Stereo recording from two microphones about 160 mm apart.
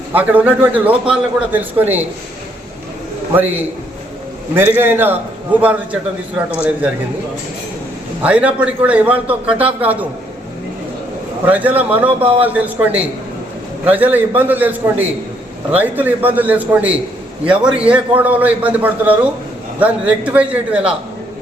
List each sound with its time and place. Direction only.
0.1 s a man's voice: 10° right (ahead or behind)
4.5 s a man's voice: 10° right (ahead or behind)
8.2 s a man's voice: 10° right (ahead or behind)
11.4 s a man's voice: 10° right (ahead or behind)
12.2 s speech: 35° right (ahead or behind)
12.5 s a man's voice: 10° right (ahead or behind)